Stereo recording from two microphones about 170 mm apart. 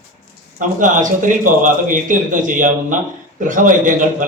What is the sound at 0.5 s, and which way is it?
A man's voice, 50° right (ahead or behind).